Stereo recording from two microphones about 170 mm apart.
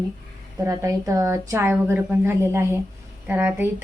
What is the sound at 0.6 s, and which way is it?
A woman's voice, 20° right (ahead or behind).